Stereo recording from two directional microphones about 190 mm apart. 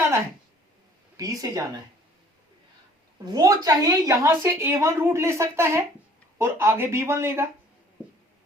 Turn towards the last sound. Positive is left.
turn(degrees=-15)  # may be behind; listen again after turning